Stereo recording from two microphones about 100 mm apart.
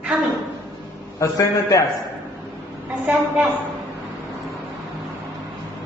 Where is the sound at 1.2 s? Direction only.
35° left (ahead or behind).